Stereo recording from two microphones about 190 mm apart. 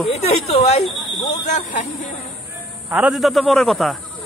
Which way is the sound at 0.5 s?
35° left (ahead or behind).